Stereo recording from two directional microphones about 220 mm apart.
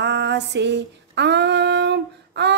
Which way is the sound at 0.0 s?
50° right (ahead or behind).